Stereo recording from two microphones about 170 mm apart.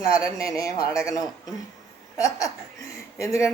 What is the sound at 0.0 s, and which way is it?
Speech, 20° left (ahead or behind).